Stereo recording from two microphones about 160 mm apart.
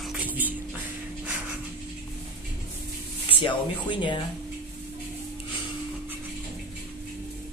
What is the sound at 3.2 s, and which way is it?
Speech, 30° left (ahead or behind).